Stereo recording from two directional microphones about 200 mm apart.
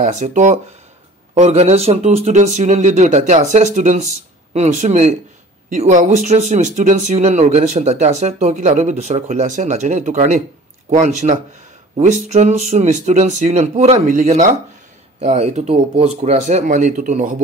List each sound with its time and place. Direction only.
0.0 s speech: 35° right (ahead or behind)